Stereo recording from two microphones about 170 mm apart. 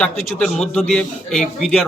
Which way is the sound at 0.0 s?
5° left (ahead or behind).